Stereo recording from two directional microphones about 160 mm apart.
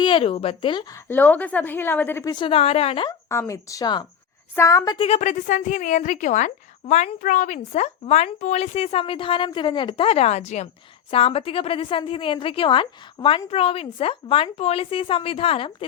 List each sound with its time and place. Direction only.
0.0 s a woman's voice: 35° left (ahead or behind)
1.0 s a woman's voice: 10° left (ahead or behind)
2.3 s a woman's voice: 35° left (ahead or behind)
3.1 s a woman's voice: 20° left (ahead or behind)
4.9 s a woman's voice: 40° left (ahead or behind)